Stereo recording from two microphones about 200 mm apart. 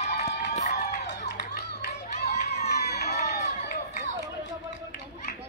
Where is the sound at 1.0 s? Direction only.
55° left (ahead or behind).